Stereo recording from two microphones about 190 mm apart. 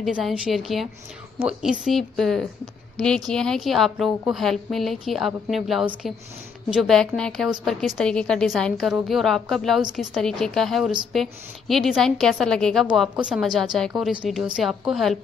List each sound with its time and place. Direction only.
0.0 s a woman's voice: centre (ahead or behind)